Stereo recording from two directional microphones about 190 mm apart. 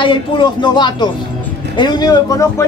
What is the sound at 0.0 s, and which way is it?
Speech, 25° left (ahead or behind).